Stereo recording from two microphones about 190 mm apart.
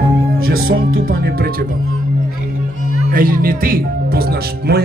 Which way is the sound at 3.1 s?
50° right (ahead or behind).